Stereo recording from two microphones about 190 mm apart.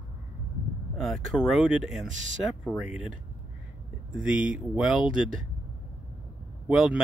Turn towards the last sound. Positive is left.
turn(degrees=-5)  # may be behind; listen again after turning